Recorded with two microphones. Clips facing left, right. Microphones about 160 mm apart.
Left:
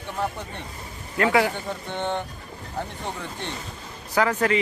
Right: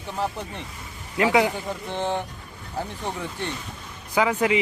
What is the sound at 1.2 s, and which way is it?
Speech, 20° right (ahead or behind).